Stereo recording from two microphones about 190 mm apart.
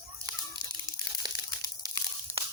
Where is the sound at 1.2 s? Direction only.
20° right (ahead or behind).